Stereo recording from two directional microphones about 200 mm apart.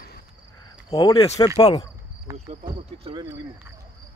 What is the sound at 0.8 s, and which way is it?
Speech, 20° left (ahead or behind).